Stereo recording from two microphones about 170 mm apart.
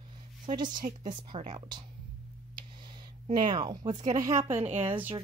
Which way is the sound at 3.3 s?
25° right (ahead or behind).